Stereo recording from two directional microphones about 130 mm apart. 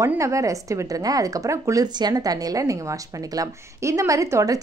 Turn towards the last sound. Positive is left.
turn(degrees=-25)  # may be behind; listen again after turning